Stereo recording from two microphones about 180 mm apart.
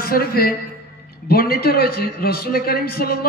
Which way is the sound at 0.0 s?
55° left (ahead or behind).